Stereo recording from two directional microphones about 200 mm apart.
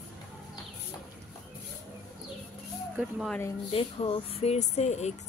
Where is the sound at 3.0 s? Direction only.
Centre (ahead or behind).